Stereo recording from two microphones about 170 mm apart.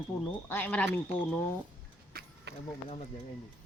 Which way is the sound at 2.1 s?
90° right.